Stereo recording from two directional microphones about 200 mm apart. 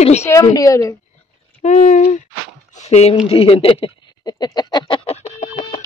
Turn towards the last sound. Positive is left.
turn(degrees=35)  # may be behind; listen again after turning